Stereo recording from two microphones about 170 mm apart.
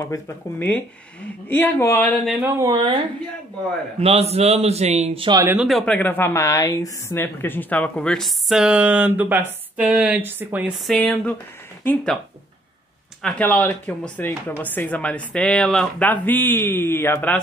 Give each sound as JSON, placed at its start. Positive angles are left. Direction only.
{"t": 0.0, "sound": "speech", "side_deg": 15}
{"t": 2.4, "sound": "speech", "side_deg": -20}
{"t": 4.0, "sound": "a man's voice", "side_deg": -35}
{"t": 5.6, "sound": "a woman's voice", "side_deg": 0}
{"t": 10.9, "sound": "a woman's voice", "side_deg": 5}
{"t": 13.2, "sound": "speech", "side_deg": 5}